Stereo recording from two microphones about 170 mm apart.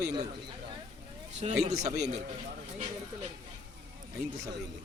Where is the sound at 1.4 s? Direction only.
40° right (ahead or behind).